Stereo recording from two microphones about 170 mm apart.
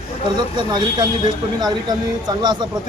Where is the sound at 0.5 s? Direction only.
25° right (ahead or behind).